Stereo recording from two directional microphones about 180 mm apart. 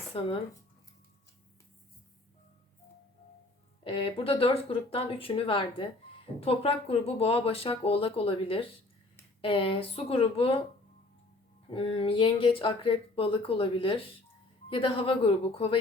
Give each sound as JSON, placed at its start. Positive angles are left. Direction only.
{"t": 0.1, "sound": "speech", "side_deg": 30}
{"t": 3.8, "sound": "speech", "side_deg": 30}
{"t": 11.7, "sound": "speech", "side_deg": 30}